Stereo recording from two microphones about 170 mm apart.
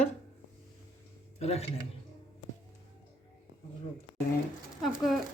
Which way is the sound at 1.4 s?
40° left (ahead or behind).